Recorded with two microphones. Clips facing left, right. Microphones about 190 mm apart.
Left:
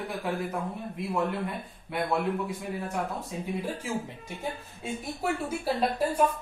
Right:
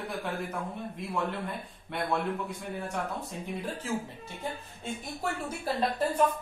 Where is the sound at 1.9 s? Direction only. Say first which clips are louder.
Left 3 dB; 5° left (ahead or behind).